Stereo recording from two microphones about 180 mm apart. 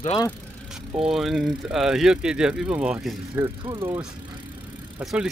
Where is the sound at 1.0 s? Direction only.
Centre (ahead or behind).